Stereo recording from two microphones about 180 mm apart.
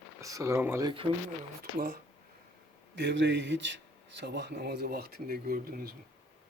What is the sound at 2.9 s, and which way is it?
Speech, 85° right.